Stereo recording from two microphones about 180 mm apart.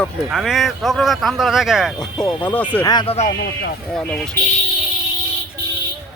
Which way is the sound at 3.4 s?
75° left (ahead or behind).